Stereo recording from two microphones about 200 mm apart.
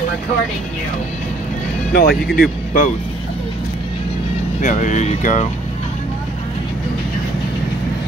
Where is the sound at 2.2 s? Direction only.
50° left (ahead or behind).